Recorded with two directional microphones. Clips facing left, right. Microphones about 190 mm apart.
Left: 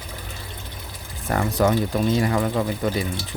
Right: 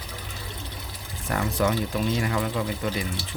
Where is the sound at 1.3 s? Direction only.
40° left (ahead or behind).